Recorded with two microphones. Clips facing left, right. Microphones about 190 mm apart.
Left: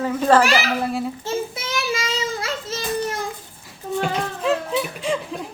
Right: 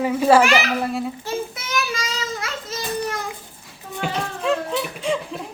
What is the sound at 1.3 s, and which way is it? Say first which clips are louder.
Speech: left 3 dB; 25° left (ahead or behind).